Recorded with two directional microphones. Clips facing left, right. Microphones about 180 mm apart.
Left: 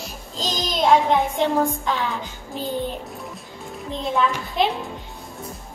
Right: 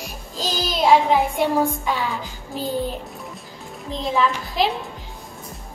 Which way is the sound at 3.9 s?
Centre (ahead or behind).